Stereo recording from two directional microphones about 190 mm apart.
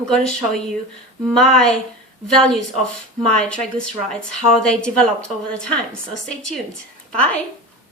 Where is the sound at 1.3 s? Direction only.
5° left (ahead or behind).